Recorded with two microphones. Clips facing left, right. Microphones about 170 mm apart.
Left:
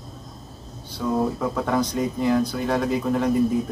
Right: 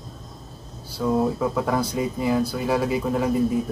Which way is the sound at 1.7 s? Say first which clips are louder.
Left 1 dB; 5° right (ahead or behind).